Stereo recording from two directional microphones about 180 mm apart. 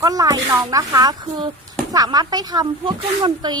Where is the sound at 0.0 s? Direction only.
20° right (ahead or behind).